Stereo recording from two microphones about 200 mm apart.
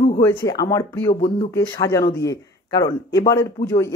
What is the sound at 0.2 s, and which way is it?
Speech, 10° left (ahead or behind).